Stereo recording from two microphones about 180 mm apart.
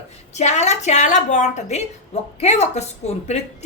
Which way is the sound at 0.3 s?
40° left (ahead or behind).